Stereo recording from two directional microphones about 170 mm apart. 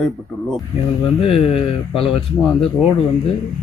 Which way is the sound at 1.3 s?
35° left (ahead or behind).